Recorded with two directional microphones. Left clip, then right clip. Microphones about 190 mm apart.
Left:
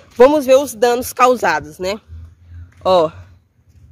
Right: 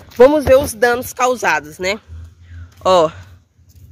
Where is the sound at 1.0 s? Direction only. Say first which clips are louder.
Left 4 dB; 55° left (ahead or behind).